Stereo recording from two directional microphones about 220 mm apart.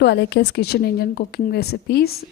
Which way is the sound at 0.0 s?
50° left (ahead or behind).